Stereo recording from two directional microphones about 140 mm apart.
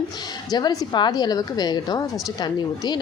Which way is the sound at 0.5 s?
30° left (ahead or behind).